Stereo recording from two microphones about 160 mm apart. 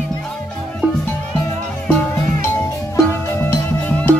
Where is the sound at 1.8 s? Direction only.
15° left (ahead or behind).